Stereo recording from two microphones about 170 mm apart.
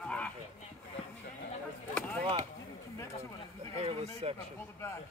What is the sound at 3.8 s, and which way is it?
Speech, 35° right (ahead or behind).